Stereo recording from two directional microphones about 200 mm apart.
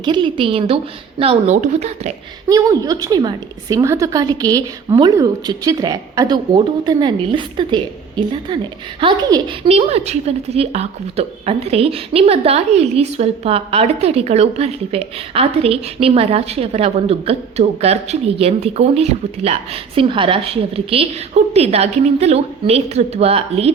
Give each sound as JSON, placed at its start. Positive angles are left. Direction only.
{"t": 0.0, "sound": "a woman's voice", "side_deg": -25}
{"t": 2.5, "sound": "a woman's voice", "side_deg": -15}